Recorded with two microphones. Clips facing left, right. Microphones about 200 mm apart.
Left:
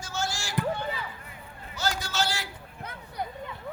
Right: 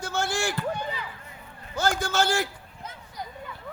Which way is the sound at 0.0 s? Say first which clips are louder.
Right 6 dB; 60° right (ahead or behind).